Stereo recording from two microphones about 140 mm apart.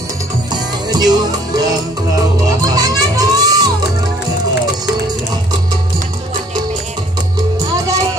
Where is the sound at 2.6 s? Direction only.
25° right (ahead or behind).